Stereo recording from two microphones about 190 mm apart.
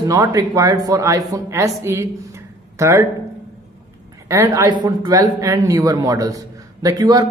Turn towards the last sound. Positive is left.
turn(degrees=-20)  # may be behind; listen again after turning